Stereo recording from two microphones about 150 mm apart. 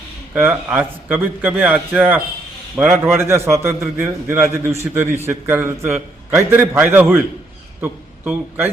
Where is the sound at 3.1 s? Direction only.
15° right (ahead or behind).